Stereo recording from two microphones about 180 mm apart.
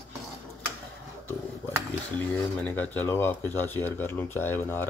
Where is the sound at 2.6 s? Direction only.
10° left (ahead or behind).